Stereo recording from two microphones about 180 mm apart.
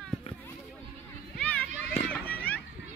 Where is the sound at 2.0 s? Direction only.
10° left (ahead or behind).